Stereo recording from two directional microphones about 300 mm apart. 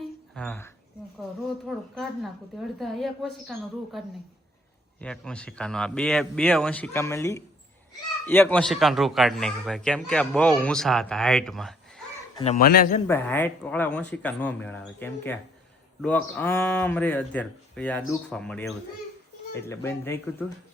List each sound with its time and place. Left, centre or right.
0.0 s a sound: centre
1.6 s a man's voice: centre
4.9 s a man's voice: centre
12.4 s speech: left
13.1 s a man's voice: centre